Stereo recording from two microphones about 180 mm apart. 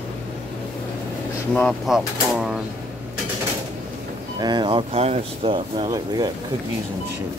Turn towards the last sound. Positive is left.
turn(degrees=-20)  # may be behind; listen again after turning